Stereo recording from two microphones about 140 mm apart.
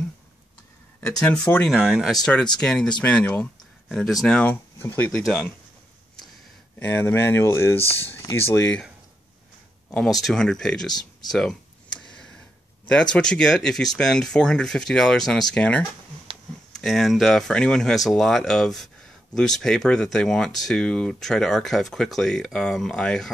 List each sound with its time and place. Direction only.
1.7 s speech: 5° right (ahead or behind)
6.8 s speech: 15° left (ahead or behind)
9.8 s speech: centre (ahead or behind)
10.9 s speech: 30° left (ahead or behind)
12.0 s a sound: 5° left (ahead or behind)
12.8 s speech: 5° left (ahead or behind)